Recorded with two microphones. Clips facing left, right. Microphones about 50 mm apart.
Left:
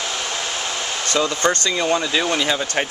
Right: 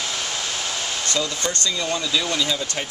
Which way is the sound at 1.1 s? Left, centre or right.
Left.